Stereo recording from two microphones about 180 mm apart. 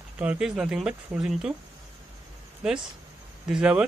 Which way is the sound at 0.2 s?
5° right (ahead or behind).